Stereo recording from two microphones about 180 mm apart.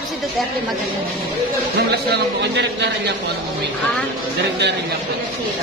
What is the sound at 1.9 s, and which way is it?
Speech, 70° right (ahead or behind).